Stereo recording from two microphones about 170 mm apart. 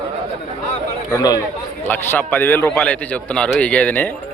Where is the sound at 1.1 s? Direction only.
20° left (ahead or behind).